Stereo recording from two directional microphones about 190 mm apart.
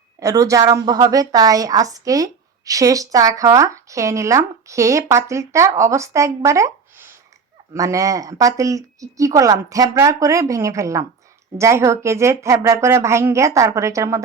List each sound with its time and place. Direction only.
0.2 s a woman's voice: 15° right (ahead or behind)